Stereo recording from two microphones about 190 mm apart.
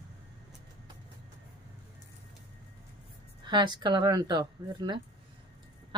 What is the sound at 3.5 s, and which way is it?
Speech, 25° right (ahead or behind).